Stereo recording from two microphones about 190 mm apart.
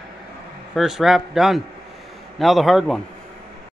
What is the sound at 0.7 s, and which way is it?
Speech, centre (ahead or behind).